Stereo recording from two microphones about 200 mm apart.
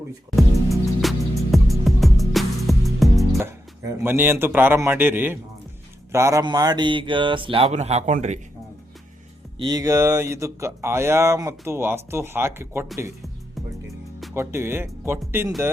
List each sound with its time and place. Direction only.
0.3 s music: centre (ahead or behind)
4.0 s speech: 10° right (ahead or behind); by 8.4 s 35° right (ahead or behind)
9.6 s speech: 20° right (ahead or behind)
14.3 s speech: 10° right (ahead or behind)